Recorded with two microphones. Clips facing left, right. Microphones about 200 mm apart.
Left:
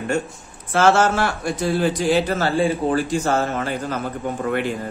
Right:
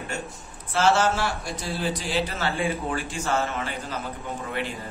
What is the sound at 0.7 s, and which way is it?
Speech, 50° left (ahead or behind).